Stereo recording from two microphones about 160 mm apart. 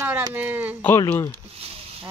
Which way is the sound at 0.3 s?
10° right (ahead or behind).